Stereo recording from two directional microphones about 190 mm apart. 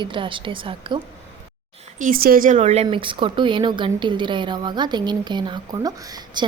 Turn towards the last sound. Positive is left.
turn(degrees=-20)  # may be behind; listen again after turning